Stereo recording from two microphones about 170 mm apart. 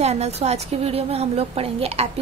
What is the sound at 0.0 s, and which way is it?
A woman's voice, 40° right (ahead or behind).